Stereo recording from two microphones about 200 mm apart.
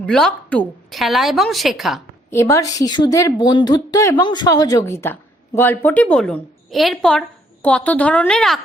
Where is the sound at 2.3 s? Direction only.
15° left (ahead or behind).